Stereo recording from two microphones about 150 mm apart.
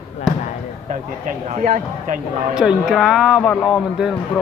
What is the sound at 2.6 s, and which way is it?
A man's voice, 5° right (ahead or behind).